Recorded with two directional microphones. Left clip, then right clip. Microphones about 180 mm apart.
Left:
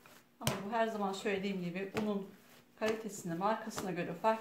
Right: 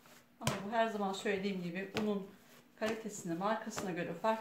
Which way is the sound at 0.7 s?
20° left (ahead or behind).